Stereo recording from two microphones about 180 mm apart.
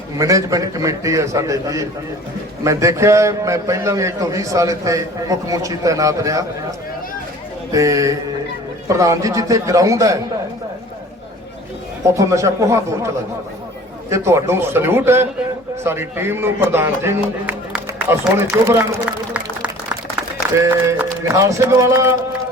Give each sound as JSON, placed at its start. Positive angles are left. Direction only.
{"t": 0.2, "sound": "a man's voice", "side_deg": -20}
{"t": 7.7, "sound": "a man's voice", "side_deg": -20}
{"t": 12.0, "sound": "a man's voice", "side_deg": -15}
{"t": 14.1, "sound": "a man's voice", "side_deg": -15}
{"t": 21.3, "sound": "a man's voice", "side_deg": -15}